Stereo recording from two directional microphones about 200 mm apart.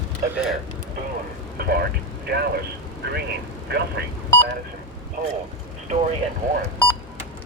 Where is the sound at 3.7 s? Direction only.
55° right (ahead or behind).